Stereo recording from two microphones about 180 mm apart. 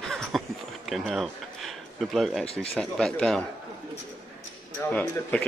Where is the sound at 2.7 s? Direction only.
5° left (ahead or behind).